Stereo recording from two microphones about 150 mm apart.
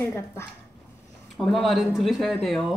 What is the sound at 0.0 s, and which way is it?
Speech, 15° left (ahead or behind).